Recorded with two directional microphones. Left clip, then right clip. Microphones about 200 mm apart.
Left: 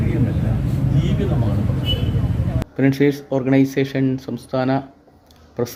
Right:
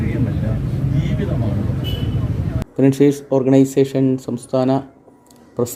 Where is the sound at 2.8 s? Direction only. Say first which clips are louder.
Right 3 dB; 20° right (ahead or behind).